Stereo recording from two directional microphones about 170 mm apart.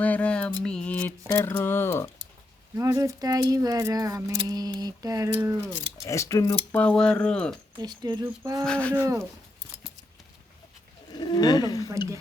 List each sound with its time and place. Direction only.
0.0 s a sound: 10° left (ahead or behind)
1.3 s speech: 15° left (ahead or behind)
2.7 s speech: 20° right (ahead or behind)
6.1 s speech: 15° left (ahead or behind)
6.7 s speech: 10° left (ahead or behind)
7.8 s speech: 25° right (ahead or behind)
8.6 s speech: 5° left (ahead or behind)
11.1 s speech: 25° left (ahead or behind)